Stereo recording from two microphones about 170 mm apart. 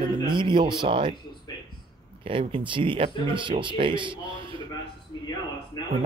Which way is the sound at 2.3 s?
30° right (ahead or behind).